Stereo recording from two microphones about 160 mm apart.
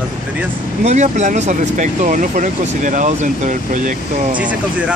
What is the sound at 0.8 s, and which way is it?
Speech, 50° right (ahead or behind).